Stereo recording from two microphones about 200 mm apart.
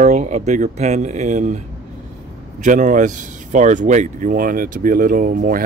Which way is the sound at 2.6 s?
40° right (ahead or behind).